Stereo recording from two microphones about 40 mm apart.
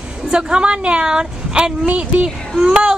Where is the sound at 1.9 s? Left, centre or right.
Right.